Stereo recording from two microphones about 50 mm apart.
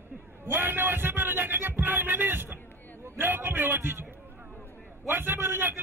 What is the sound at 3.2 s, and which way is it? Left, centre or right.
A man's voice, right.